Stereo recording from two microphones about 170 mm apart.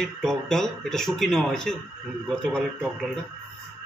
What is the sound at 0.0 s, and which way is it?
A man's voice, centre (ahead or behind).